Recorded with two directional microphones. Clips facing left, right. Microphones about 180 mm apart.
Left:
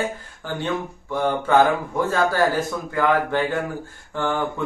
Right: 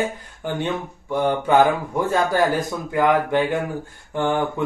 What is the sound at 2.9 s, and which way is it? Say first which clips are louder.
Speech: right 3 dB; 15° right (ahead or behind).